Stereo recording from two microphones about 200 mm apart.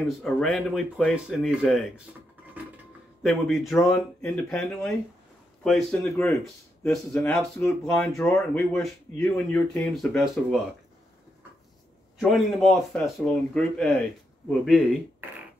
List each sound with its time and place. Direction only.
0.2 s speech: centre (ahead or behind)
3.2 s speech: centre (ahead or behind)
12.2 s speech: centre (ahead or behind)